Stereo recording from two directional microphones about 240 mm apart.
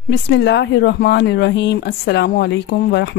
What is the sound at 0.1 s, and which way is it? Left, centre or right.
Speech, left.